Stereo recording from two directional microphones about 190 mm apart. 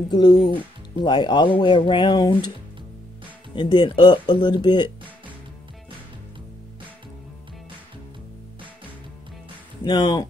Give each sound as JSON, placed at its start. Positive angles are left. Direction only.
{"t": 0.1, "sound": "speech", "side_deg": 20}
{"t": 3.5, "sound": "speech", "side_deg": 25}
{"t": 9.8, "sound": "speech", "side_deg": 20}